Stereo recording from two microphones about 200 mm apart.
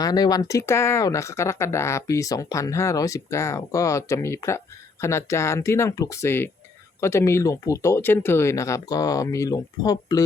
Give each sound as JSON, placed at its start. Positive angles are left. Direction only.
{"t": 0.0, "sound": "speech", "side_deg": 20}